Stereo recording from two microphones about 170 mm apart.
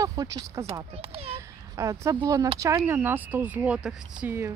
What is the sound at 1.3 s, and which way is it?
Speech, 20° right (ahead or behind).